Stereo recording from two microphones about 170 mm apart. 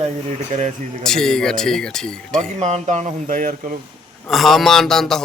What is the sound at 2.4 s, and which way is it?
Speech, 40° right (ahead or behind).